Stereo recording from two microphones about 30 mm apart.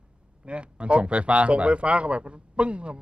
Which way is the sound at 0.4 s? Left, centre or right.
Right.